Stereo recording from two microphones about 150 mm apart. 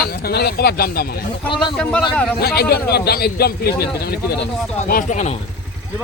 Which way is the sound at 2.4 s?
90° left.